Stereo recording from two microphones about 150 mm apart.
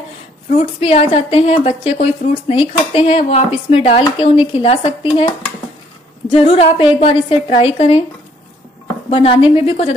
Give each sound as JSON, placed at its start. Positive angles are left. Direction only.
{"t": 0.6, "sound": "speech", "side_deg": 45}
{"t": 6.3, "sound": "speech", "side_deg": 40}
{"t": 9.1, "sound": "speech", "side_deg": 35}